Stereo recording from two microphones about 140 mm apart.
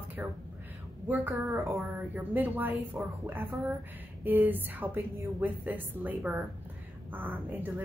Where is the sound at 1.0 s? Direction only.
10° right (ahead or behind).